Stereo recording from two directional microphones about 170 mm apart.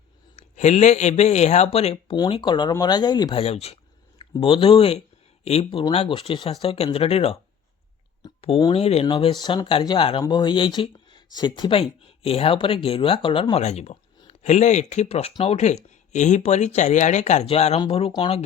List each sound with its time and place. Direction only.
0.3 s speech: 40° left (ahead or behind)
2.1 s speech: 25° left (ahead or behind)
3.4 s speech: 35° left (ahead or behind)
9.0 s speech: 25° left (ahead or behind)